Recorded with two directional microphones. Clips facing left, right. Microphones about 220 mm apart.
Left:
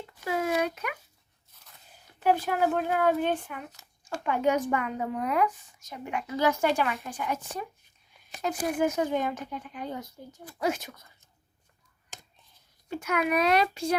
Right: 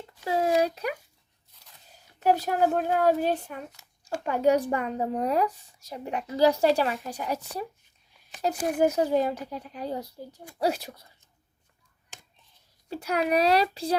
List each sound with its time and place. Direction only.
0.3 s a sound: 35° right (ahead or behind)
2.1 s speech: 40° right (ahead or behind)
12.9 s speech: 35° right (ahead or behind)